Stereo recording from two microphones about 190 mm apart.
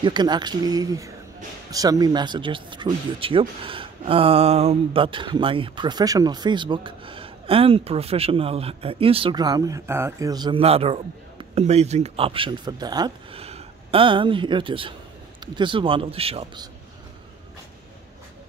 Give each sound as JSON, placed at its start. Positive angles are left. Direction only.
{"t": 0.0, "sound": "speech", "side_deg": -25}